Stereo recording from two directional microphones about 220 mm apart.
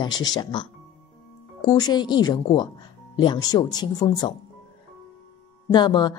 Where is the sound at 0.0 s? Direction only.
20° left (ahead or behind).